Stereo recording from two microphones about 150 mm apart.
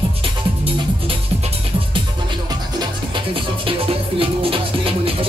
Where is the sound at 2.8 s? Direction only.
30° right (ahead or behind).